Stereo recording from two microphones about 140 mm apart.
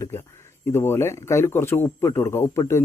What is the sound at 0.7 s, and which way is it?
Speech, 15° left (ahead or behind).